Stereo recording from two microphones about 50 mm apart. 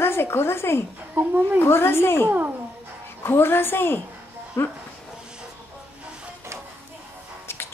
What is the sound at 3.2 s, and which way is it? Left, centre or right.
Speech, left.